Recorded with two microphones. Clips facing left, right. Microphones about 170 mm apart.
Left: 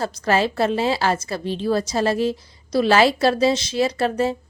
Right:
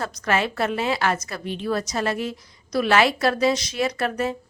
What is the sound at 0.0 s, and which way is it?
A woman's voice, 30° left (ahead or behind).